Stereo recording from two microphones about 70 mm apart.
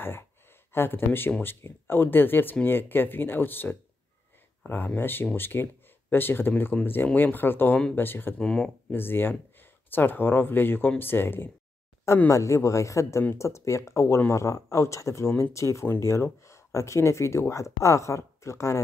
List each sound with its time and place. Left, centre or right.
0.7 s speech: left
6.5 s speech: centre
8.4 s speech: centre
8.9 s speech: left
12.3 s speech: left